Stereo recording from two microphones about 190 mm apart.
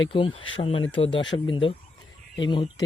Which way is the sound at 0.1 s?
25° left (ahead or behind).